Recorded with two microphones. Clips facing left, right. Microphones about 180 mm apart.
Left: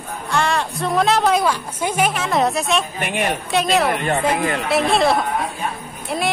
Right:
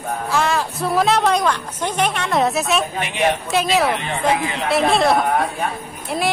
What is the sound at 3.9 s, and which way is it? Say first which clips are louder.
Speech: left 1 dB; 50° left (ahead or behind).